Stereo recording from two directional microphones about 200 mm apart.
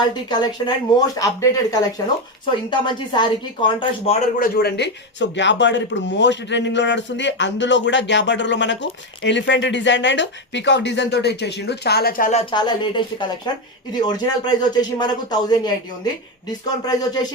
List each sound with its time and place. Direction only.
0.1 s speech: 20° left (ahead or behind)
4.4 s speech: 50° left (ahead or behind); by 17.1 s 20° left (ahead or behind)